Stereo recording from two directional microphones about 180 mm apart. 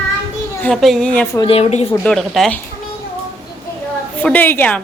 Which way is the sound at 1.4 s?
35° left (ahead or behind).